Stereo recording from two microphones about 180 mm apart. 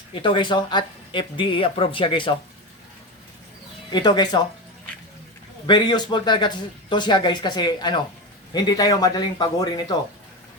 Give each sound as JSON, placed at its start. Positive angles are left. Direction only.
{"t": 0.1, "sound": "speech", "side_deg": 25}
{"t": 3.9, "sound": "speech", "side_deg": 25}
{"t": 5.6, "sound": "speech", "side_deg": 25}